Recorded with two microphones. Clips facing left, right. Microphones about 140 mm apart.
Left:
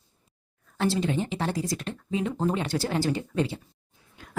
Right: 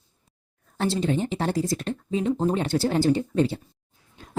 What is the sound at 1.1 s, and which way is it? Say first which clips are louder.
Speech: right 3 dB; 35° right (ahead or behind).